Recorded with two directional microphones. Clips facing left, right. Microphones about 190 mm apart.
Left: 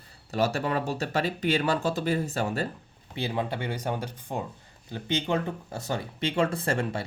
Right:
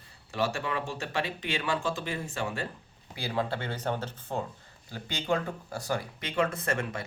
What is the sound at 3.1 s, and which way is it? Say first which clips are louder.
Speech: left 2 dB; 20° left (ahead or behind).